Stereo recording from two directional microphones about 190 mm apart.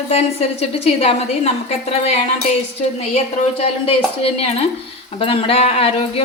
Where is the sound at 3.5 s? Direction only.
30° left (ahead or behind).